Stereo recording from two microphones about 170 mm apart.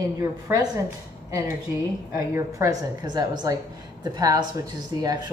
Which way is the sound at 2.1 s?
15° right (ahead or behind).